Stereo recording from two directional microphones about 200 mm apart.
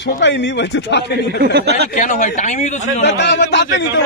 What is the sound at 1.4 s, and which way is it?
Speech, 55° right (ahead or behind).